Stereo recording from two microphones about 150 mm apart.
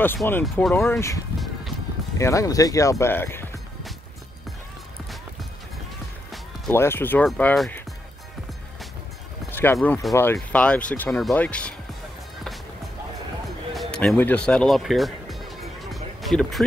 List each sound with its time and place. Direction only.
0.0 s speech: 15° left (ahead or behind)
6.7 s speech: 15° left (ahead or behind)
9.5 s a sound: 15° left (ahead or behind)
9.8 s speech: centre (ahead or behind)
10.1 s speech: 15° left (ahead or behind)
13.7 s music: 5° left (ahead or behind)